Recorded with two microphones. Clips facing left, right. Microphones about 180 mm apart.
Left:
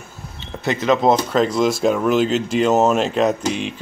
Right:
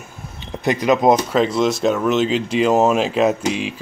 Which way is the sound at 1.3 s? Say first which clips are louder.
Even; centre (ahead or behind).